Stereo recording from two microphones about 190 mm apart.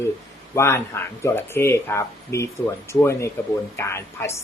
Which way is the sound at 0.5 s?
15° left (ahead or behind).